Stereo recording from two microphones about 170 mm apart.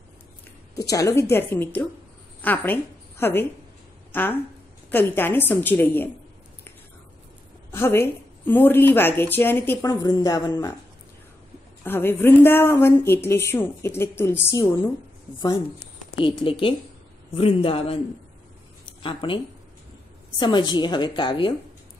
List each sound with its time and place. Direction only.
0.7 s a woman's voice: 20° left (ahead or behind)
7.7 s a woman's voice: 15° left (ahead or behind)
11.8 s speech: 10° left (ahead or behind)
16.2 s a man's voice: 30° left (ahead or behind)
19.0 s a man's voice: 30° left (ahead or behind)